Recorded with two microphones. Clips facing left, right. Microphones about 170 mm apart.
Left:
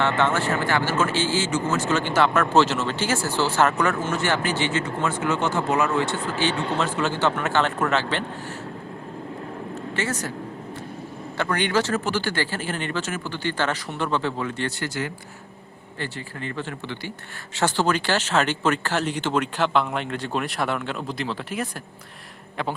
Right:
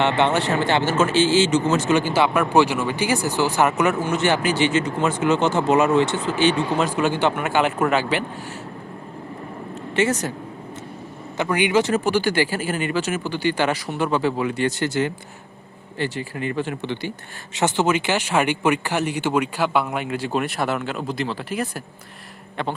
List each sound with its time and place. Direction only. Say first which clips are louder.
0.0 s speech: right 3 dB; 20° right (ahead or behind)
9.9 s speech: right 8 dB; 20° right (ahead or behind)
11.3 s speech: right 4 dB; 15° right (ahead or behind)
14.8 s speech: right 7 dB; 25° right (ahead or behind)
16.1 s speech: right 6 dB; 15° right (ahead or behind)